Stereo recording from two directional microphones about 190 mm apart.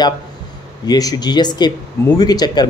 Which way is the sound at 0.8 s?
20° left (ahead or behind).